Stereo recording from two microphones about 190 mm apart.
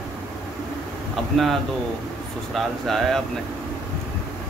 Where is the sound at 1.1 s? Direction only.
Centre (ahead or behind).